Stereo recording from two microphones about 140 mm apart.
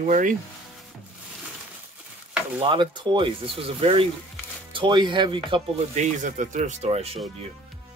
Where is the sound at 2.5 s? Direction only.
35° right (ahead or behind).